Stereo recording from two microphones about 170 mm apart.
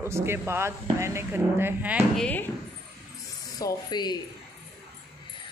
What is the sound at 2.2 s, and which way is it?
Speech, 10° left (ahead or behind).